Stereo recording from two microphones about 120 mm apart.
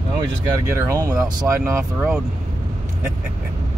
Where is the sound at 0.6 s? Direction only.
20° right (ahead or behind).